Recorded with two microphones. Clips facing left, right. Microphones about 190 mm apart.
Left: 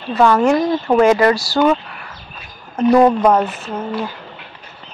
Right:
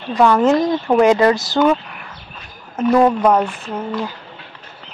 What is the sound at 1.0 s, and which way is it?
Speech, 20° right (ahead or behind).